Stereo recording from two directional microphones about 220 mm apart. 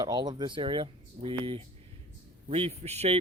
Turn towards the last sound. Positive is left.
turn(degrees=-30)  # may be behind; listen again after turning